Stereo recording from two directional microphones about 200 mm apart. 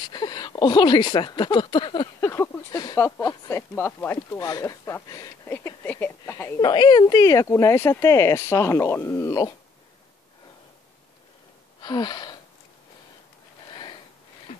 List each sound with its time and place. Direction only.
0.0 s speech: 20° left (ahead or behind)
11.8 s gasp: 20° left (ahead or behind)
13.7 s a sound: 25° left (ahead or behind)